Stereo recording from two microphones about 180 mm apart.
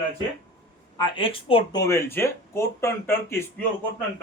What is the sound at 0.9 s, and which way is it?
Speech, 30° left (ahead or behind).